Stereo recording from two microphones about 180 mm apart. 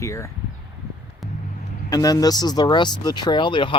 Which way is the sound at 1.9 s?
20° left (ahead or behind).